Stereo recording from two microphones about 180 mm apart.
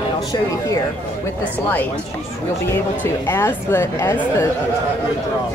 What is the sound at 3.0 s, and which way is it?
Speech, 10° left (ahead or behind).